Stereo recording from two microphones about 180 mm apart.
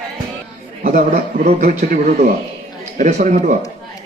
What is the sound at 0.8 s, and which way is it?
A man's voice, 40° right (ahead or behind).